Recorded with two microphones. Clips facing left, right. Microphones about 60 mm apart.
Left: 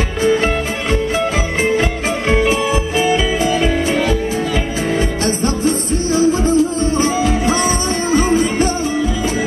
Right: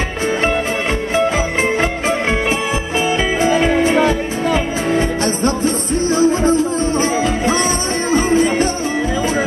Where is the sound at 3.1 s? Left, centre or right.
Right.